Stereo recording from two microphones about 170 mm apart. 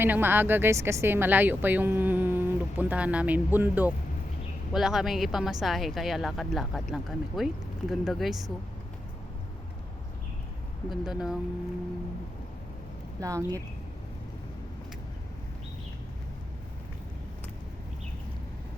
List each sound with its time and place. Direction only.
0.0 s speech: 10° right (ahead or behind)
10.8 s speech: centre (ahead or behind)
13.1 s speech: 20° right (ahead or behind)